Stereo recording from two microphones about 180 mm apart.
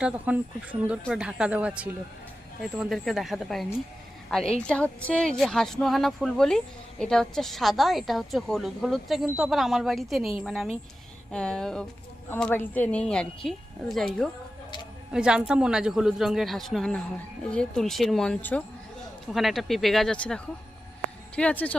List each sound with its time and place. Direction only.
0.0 s a woman's voice: 5° right (ahead or behind)
15.1 s a woman's voice: 5° right (ahead or behind)